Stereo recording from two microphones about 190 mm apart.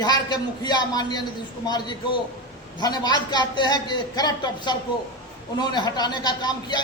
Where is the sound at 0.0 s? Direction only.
20° left (ahead or behind).